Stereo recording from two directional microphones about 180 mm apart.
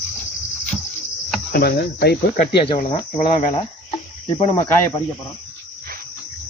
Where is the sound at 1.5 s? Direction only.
65° left (ahead or behind).